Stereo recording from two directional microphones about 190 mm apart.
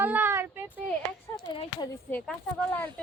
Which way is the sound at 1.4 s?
30° left (ahead or behind).